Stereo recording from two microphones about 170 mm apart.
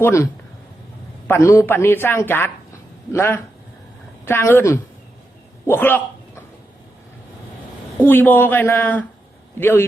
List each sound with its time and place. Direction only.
0.0 s speech: 15° left (ahead or behind)
1.3 s speech: 15° left (ahead or behind)
8.0 s speech: 10° left (ahead or behind)